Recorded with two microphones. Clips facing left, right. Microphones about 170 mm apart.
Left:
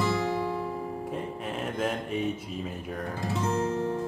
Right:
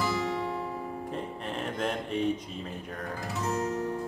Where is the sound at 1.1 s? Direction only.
5° left (ahead or behind).